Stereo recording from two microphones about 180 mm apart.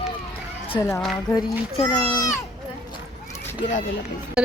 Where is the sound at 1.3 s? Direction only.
20° left (ahead or behind).